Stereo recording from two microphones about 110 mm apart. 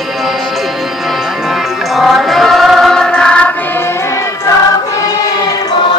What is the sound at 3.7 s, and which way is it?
Choir, 25° left (ahead or behind).